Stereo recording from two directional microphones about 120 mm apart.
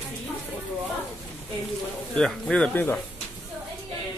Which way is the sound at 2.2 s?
5° left (ahead or behind).